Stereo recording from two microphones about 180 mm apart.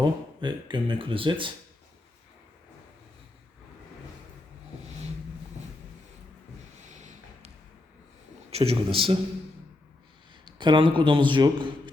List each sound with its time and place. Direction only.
0.0 s speech: 25° right (ahead or behind)
6.9 s a sound: 40° right (ahead or behind)
8.4 s a man's voice: 35° right (ahead or behind)
10.4 s speech: 25° right (ahead or behind)